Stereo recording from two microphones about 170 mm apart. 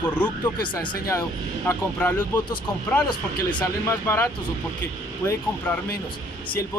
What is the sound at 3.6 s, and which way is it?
Speech, 15° left (ahead or behind).